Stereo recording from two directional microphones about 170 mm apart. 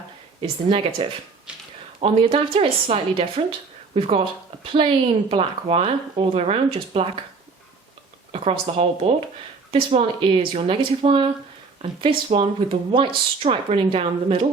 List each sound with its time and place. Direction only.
0.4 s speech: 30° right (ahead or behind)
8.3 s speech: 35° right (ahead or behind)